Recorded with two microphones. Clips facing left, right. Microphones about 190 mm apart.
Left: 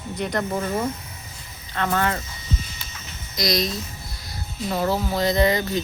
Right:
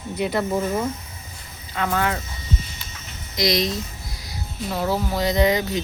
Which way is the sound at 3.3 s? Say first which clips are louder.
Right 2 dB; 20° right (ahead or behind).